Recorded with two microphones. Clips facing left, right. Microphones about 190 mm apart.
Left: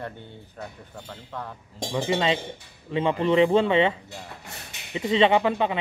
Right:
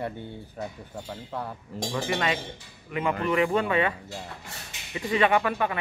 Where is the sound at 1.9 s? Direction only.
20° left (ahead or behind).